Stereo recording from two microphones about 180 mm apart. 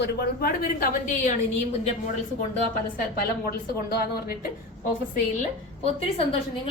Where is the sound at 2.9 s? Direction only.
55° left (ahead or behind).